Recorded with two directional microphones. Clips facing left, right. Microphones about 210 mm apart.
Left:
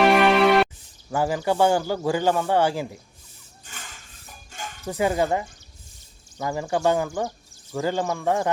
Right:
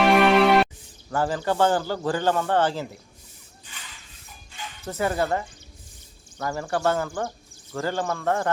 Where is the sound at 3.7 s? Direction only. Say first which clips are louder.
Left 4 dB; 45° left (ahead or behind).